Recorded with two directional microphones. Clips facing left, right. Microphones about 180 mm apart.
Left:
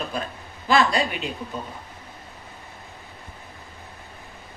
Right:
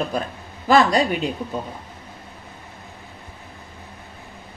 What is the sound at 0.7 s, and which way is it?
Speech, 45° right (ahead or behind).